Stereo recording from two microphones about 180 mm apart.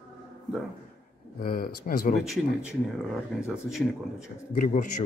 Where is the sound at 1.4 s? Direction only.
55° left (ahead or behind).